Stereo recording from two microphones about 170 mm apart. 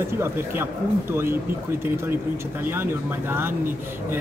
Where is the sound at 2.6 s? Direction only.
10° right (ahead or behind).